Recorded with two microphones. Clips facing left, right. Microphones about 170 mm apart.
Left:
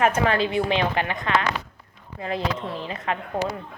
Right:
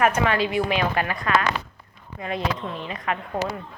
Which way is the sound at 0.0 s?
30° left (ahead or behind).